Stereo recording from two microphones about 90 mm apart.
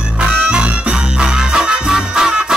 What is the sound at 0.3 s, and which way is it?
Music, 10° right (ahead or behind).